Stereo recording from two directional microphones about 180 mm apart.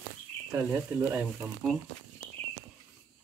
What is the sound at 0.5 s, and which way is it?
Speech, 10° right (ahead or behind).